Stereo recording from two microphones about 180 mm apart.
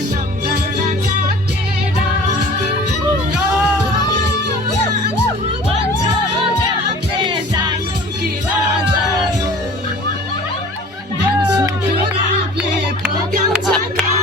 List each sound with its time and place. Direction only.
7.2 s music: 25° right (ahead or behind)
13.7 s music: 5° left (ahead or behind)